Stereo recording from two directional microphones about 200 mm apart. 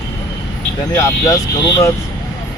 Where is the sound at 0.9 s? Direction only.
15° left (ahead or behind).